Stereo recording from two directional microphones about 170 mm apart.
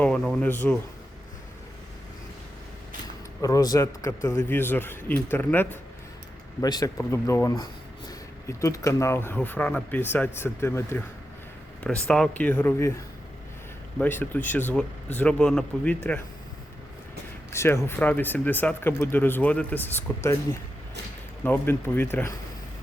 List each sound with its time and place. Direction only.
0.0 s speech: 5° left (ahead or behind)
3.4 s speech: 20° left (ahead or behind)
6.6 s speech: 20° left (ahead or behind)
14.0 s speech: 10° left (ahead or behind)
17.5 s speech: 15° left (ahead or behind)